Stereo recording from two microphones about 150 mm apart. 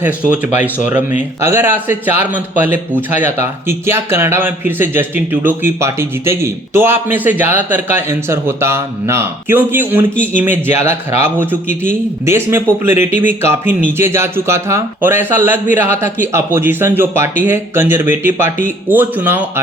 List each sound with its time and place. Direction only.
0.0 s speech: 10° right (ahead or behind)